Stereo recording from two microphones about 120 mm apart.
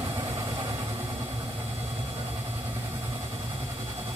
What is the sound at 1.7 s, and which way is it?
Vehicle, 60° right (ahead or behind).